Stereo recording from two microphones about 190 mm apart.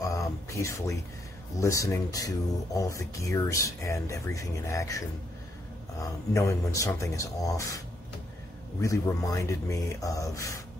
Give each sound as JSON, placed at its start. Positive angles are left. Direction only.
{"t": 0.1, "sound": "a sound", "side_deg": 15}
{"t": 1.6, "sound": "speech", "side_deg": 15}
{"t": 8.8, "sound": "speech", "side_deg": 15}